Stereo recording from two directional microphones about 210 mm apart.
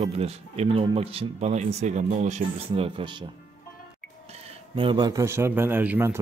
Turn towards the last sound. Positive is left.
turn(degrees=-10)  # may be behind; listen again after turning